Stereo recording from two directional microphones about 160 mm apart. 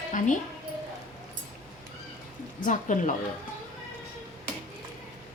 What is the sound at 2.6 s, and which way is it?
Speech, 50° left (ahead or behind).